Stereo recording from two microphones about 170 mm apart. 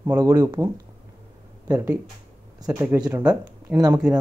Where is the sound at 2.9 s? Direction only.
25° right (ahead or behind).